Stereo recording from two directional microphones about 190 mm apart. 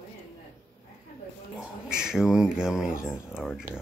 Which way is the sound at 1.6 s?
5° right (ahead or behind).